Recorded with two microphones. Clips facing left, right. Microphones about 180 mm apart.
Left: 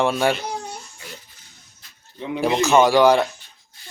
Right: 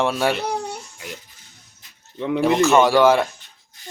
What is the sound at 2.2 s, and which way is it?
Speech, 55° right (ahead or behind).